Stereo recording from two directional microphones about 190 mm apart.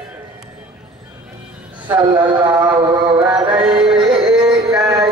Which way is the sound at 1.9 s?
10° right (ahead or behind).